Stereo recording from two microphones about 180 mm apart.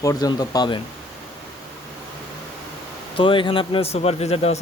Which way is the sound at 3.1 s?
30° left (ahead or behind).